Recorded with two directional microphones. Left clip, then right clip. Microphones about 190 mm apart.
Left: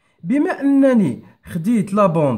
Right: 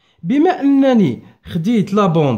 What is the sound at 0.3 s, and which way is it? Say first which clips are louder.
Speech: right 4 dB; 30° right (ahead or behind).